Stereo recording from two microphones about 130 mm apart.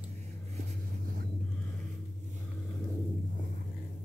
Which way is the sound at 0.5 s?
90° right.